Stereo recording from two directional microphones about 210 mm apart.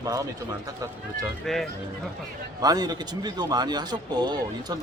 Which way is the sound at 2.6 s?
20° right (ahead or behind).